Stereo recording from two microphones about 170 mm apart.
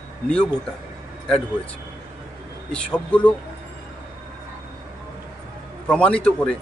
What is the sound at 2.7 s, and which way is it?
Speech, 5° left (ahead or behind).